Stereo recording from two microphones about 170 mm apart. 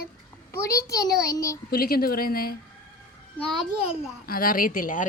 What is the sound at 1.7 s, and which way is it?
Speech, 60° left (ahead or behind).